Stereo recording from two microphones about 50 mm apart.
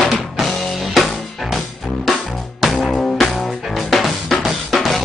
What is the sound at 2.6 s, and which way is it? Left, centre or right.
Music, centre.